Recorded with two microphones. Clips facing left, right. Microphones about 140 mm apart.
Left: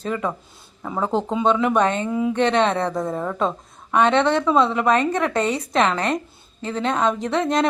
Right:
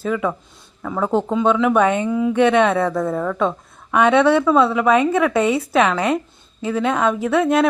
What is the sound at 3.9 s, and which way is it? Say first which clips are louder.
A woman's voice: right 3 dB; 10° right (ahead or behind).